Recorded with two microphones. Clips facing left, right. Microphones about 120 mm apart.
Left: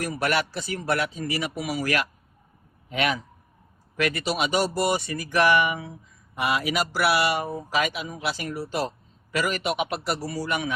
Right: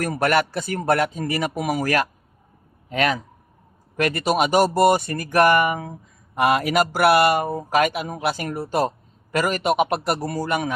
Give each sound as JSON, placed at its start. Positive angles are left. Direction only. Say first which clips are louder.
{"t": 0.0, "sound": "a man's voice", "louder": "right 5 dB", "side_deg": -50}